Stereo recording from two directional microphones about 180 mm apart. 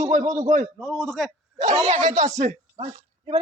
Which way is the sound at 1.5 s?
40° right (ahead or behind).